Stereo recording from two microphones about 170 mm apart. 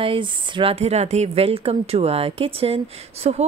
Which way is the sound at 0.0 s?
30° right (ahead or behind).